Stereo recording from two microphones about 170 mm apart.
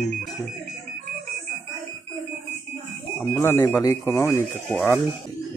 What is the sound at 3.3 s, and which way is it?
Speech, 15° left (ahead or behind).